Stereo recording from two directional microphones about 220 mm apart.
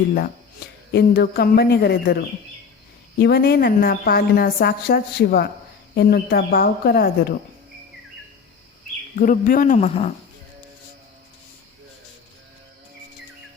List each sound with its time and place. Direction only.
0.9 s a woman's voice: 45° left (ahead or behind)
3.2 s a woman's voice: 45° left (ahead or behind)
9.1 s speech: 35° left (ahead or behind)